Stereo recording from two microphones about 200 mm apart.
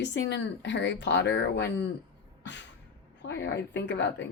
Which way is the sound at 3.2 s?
60° left (ahead or behind).